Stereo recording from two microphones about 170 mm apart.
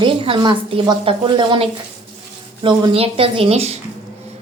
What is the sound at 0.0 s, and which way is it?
A woman's voice, 30° right (ahead or behind).